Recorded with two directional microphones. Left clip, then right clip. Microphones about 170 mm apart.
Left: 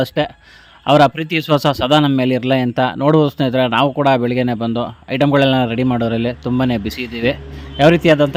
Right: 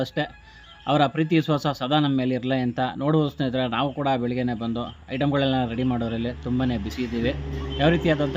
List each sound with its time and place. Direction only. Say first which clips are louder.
0.0 s a man's voice: left 9 dB; 50° left (ahead or behind)